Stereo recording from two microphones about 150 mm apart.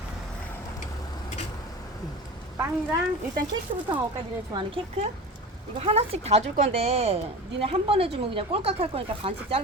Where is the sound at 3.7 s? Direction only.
50° right (ahead or behind).